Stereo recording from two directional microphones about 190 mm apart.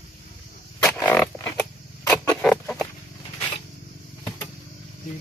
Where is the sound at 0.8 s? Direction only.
10° left (ahead or behind).